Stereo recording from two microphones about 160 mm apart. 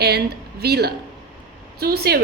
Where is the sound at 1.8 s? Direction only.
75° right (ahead or behind).